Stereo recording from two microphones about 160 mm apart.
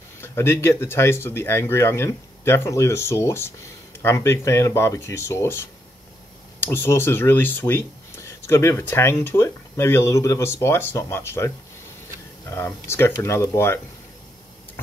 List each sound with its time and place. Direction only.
0.2 s speech: 15° left (ahead or behind)